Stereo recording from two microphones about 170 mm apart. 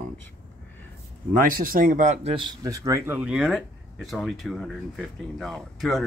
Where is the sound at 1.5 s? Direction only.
55° right (ahead or behind).